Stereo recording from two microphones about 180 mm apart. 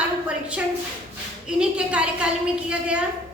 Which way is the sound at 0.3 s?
5° right (ahead or behind).